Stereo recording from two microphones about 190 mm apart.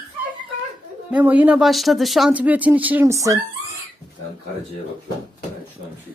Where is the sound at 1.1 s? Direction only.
10° right (ahead or behind).